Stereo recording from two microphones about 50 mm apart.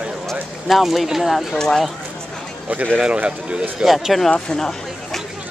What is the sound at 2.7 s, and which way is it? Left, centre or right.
Speech, right.